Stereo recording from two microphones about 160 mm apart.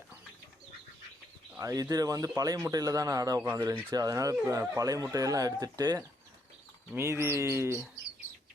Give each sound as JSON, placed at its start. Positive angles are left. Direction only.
{"t": 1.5, "sound": "speech", "side_deg": -20}
{"t": 6.9, "sound": "bird", "side_deg": -15}